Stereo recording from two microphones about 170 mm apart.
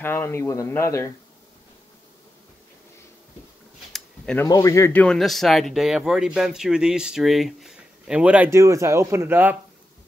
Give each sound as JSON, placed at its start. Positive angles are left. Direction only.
{"t": 0.0, "sound": "speech", "side_deg": 15}
{"t": 3.9, "sound": "a sound", "side_deg": 5}
{"t": 4.5, "sound": "speech", "side_deg": 20}
{"t": 5.0, "sound": "speech", "side_deg": 0}